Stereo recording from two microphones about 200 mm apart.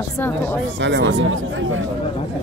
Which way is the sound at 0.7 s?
65° right (ahead or behind).